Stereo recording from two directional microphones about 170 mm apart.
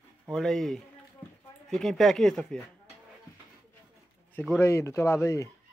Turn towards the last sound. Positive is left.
turn(degrees=15)  # may be behind; listen again after turning